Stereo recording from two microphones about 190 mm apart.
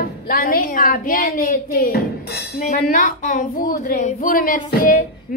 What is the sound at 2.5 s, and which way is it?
A woman's voice, 40° left (ahead or behind).